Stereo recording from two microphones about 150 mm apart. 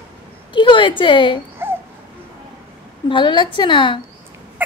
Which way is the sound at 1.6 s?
15° right (ahead or behind).